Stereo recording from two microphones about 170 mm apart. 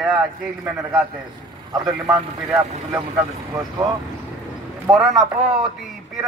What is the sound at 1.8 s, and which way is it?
Speech, 20° right (ahead or behind).